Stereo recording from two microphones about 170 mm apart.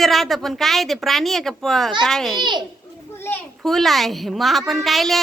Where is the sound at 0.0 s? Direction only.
Centre (ahead or behind).